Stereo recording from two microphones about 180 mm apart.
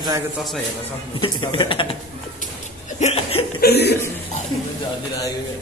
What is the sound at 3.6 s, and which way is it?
Speech, 65° left (ahead or behind).